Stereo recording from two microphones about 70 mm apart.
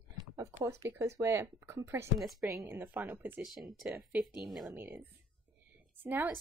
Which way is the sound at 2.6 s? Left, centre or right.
Right.